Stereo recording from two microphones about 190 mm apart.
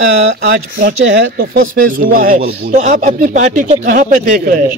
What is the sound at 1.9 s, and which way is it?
Speech, 50° right (ahead or behind).